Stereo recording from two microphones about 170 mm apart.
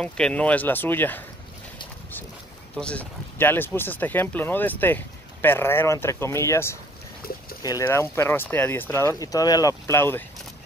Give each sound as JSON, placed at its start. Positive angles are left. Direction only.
{"t": 0.0, "sound": "speech", "side_deg": 5}
{"t": 2.8, "sound": "speech", "side_deg": 5}